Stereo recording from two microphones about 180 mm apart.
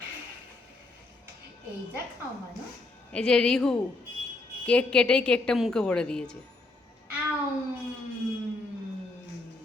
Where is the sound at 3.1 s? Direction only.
5° left (ahead or behind).